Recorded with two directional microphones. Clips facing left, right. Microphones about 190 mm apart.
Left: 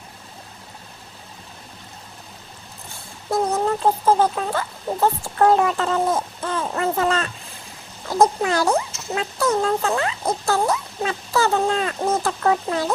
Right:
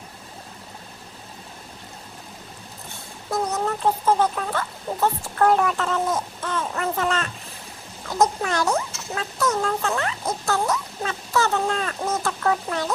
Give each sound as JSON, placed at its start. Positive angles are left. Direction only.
{"t": 3.3, "sound": "speech", "side_deg": 30}
{"t": 8.4, "sound": "speech", "side_deg": 30}